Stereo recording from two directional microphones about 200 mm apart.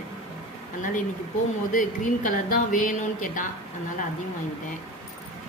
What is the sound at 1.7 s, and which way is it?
Speech, 40° left (ahead or behind).